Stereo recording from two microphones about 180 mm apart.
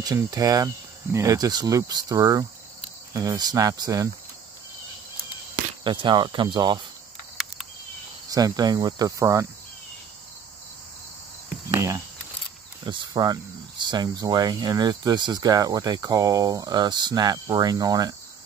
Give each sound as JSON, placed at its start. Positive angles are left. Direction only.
{"t": 0.0, "sound": "speech", "side_deg": -20}
{"t": 5.9, "sound": "speech", "side_deg": -25}
{"t": 8.3, "sound": "speech", "side_deg": -20}
{"t": 11.7, "sound": "cricket", "side_deg": -15}
{"t": 12.8, "sound": "speech", "side_deg": -25}